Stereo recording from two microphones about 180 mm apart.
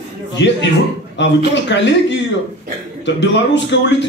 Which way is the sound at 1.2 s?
80° left.